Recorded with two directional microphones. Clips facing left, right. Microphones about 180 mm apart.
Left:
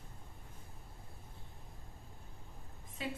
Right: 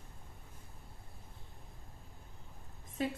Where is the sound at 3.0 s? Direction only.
45° right (ahead or behind).